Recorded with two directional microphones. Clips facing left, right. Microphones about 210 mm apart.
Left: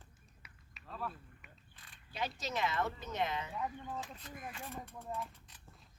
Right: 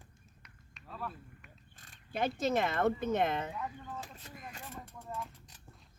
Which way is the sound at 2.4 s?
55° right (ahead or behind).